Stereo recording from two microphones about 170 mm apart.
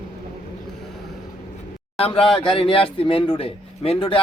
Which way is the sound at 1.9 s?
35° left (ahead or behind).